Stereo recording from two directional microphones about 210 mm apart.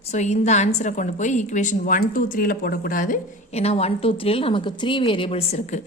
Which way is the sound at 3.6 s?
30° left (ahead or behind).